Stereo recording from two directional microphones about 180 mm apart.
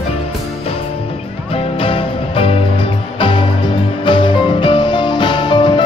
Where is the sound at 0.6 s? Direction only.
30° left (ahead or behind).